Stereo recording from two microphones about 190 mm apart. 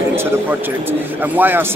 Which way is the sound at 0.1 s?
10° right (ahead or behind).